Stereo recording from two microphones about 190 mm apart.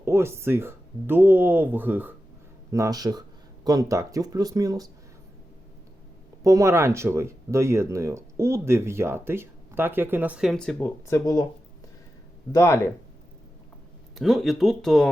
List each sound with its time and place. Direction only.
0.0 s speech: 15° right (ahead or behind)
6.4 s speech: 15° right (ahead or behind); by 11.4 s 15° left (ahead or behind)
12.5 s speech: 15° left (ahead or behind)
14.2 s speech: centre (ahead or behind)